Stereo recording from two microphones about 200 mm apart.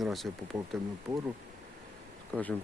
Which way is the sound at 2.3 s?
10° left (ahead or behind).